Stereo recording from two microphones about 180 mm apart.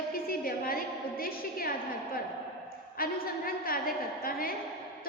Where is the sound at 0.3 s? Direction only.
55° left (ahead or behind).